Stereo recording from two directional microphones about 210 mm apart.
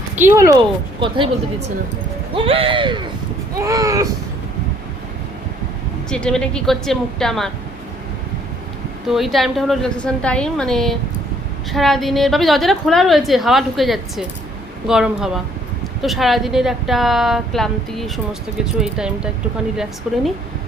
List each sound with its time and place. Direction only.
0.2 s a woman's voice: 10° right (ahead or behind)
6.1 s a woman's voice: 5° left (ahead or behind)
9.0 s a woman's voice: centre (ahead or behind)